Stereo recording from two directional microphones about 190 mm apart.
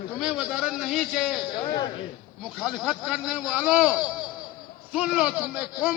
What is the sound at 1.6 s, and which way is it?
Speech, 20° left (ahead or behind).